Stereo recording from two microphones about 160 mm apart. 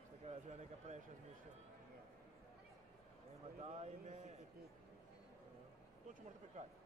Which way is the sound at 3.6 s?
45° right (ahead or behind).